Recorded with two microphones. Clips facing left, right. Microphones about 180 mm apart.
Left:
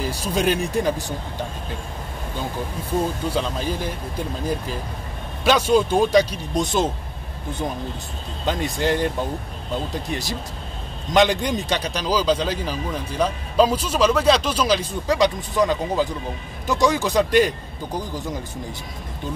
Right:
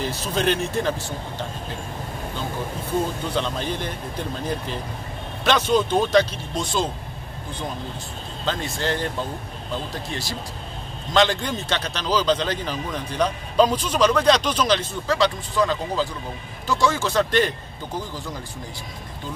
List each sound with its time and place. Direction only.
0.0 s a man's voice: 10° left (ahead or behind)
3.3 s a man's voice: 5° left (ahead or behind)
8.5 s a man's voice: 15° left (ahead or behind)